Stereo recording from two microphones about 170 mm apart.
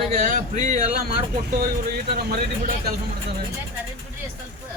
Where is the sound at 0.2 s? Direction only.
45° right (ahead or behind).